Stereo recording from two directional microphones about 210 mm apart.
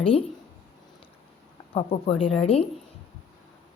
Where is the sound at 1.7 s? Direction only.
25° left (ahead or behind).